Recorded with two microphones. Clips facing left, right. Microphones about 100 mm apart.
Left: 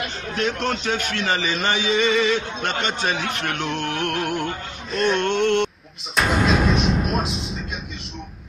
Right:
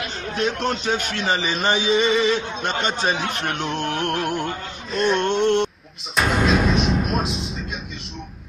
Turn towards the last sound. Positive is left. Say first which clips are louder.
# even
turn(degrees=0)  # may be behind; listen again after turning